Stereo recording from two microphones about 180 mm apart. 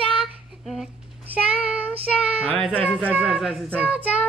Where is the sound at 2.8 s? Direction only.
5° left (ahead or behind).